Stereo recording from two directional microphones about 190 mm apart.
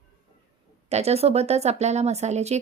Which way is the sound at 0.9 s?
35° right (ahead or behind).